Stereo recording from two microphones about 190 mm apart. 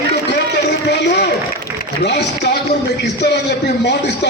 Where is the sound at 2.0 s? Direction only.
60° left (ahead or behind).